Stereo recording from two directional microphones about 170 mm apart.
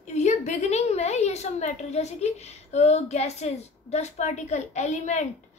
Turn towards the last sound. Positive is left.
turn(degrees=45)  # may be behind; listen again after turning